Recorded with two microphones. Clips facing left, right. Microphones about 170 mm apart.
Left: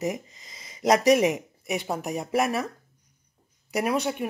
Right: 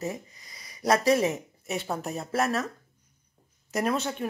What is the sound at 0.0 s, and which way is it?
Speech, 20° left (ahead or behind).